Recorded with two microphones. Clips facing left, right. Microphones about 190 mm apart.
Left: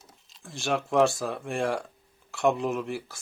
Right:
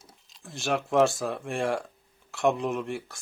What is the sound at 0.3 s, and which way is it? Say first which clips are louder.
A man's voice: even; centre (ahead or behind).